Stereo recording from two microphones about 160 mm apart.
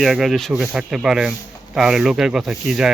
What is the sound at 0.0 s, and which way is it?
Speech, centre (ahead or behind).